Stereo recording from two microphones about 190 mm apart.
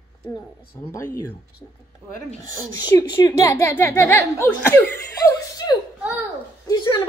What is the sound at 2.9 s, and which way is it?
A child's voice, 20° left (ahead or behind).